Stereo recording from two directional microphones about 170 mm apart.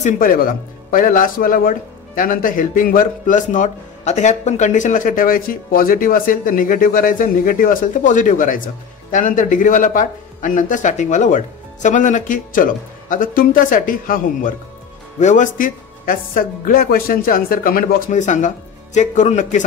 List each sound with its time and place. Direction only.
0.0 s speech: 55° left (ahead or behind)